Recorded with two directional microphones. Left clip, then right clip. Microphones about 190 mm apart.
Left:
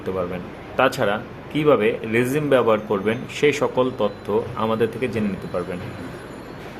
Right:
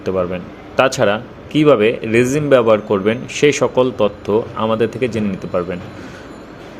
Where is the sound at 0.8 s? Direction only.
25° right (ahead or behind).